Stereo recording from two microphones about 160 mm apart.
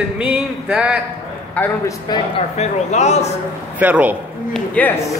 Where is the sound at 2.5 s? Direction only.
45° left (ahead or behind).